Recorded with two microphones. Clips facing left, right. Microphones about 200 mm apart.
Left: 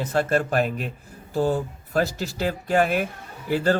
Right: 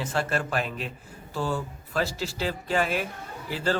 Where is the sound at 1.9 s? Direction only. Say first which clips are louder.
Left 4 dB; 50° left (ahead or behind).